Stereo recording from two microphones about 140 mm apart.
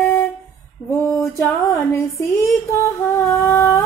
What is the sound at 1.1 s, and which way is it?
Music, 20° left (ahead or behind).